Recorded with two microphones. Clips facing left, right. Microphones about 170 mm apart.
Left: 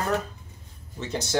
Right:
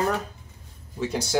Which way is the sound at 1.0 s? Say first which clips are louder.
Right 3 dB; 10° right (ahead or behind).